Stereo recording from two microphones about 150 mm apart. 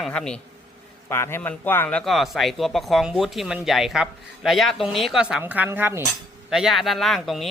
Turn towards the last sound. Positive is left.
turn(degrees=0)  # may be behind; listen again after turning